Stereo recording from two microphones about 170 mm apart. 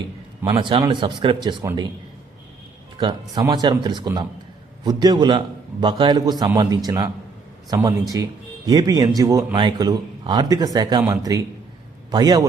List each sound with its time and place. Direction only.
0.4 s a man's voice: 30° right (ahead or behind)
3.0 s speech: 25° right (ahead or behind)